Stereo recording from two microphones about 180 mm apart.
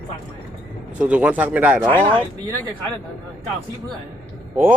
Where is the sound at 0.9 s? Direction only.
5° right (ahead or behind).